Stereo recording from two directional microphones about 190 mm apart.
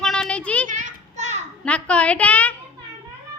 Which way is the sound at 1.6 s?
5° left (ahead or behind).